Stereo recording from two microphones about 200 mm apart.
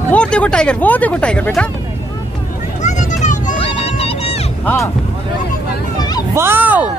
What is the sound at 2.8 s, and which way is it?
Music, 35° left (ahead or behind).